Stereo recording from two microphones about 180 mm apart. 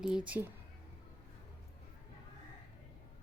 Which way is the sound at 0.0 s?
5° right (ahead or behind).